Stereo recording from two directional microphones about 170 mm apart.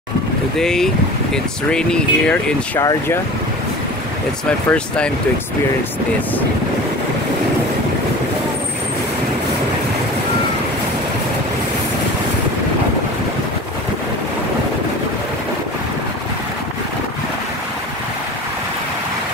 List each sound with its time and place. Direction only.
0.6 s speech: 5° left (ahead or behind)
2.8 s speech: 20° left (ahead or behind)
4.5 s speech: 5° left (ahead or behind)